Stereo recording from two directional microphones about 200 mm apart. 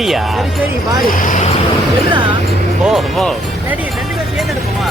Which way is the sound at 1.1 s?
40° left (ahead or behind).